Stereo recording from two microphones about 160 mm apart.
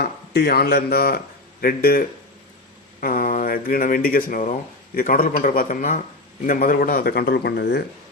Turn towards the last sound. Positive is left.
turn(degrees=90)